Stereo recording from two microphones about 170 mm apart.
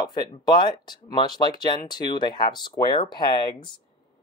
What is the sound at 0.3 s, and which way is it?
Speech, 25° left (ahead or behind).